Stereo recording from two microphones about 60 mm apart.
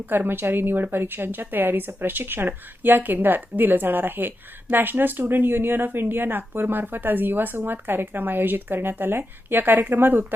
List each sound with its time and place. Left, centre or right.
0.0 s speech: right